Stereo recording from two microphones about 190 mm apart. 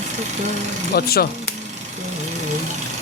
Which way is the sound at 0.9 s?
55° left (ahead or behind).